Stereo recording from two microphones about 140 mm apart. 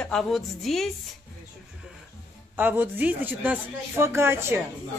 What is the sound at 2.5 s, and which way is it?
Speech, 15° right (ahead or behind).